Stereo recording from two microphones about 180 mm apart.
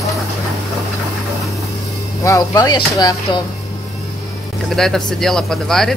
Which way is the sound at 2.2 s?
20° left (ahead or behind).